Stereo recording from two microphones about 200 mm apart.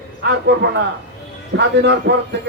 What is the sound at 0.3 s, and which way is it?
Speech, 60° right (ahead or behind).